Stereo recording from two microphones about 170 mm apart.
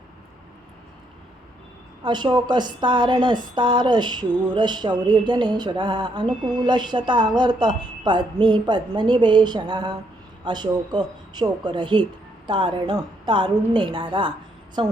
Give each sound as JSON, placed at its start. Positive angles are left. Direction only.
{"t": 2.0, "sound": "speech", "side_deg": -25}